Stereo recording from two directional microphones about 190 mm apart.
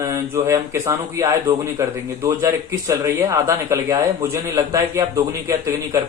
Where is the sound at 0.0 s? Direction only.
15° right (ahead or behind).